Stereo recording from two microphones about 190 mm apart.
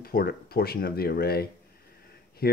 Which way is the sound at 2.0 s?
55° left (ahead or behind).